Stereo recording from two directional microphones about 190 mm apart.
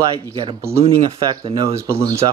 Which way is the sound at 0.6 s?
15° right (ahead or behind).